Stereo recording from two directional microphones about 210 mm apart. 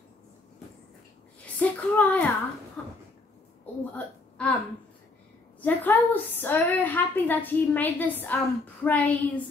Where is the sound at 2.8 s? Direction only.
5° left (ahead or behind).